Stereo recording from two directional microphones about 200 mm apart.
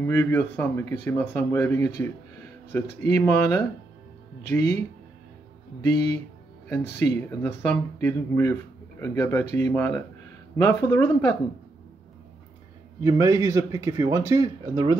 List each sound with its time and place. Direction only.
0.0 s speech: 15° left (ahead or behind)
6.7 s speech: 15° left (ahead or behind)
13.0 s a man's voice: 15° right (ahead or behind)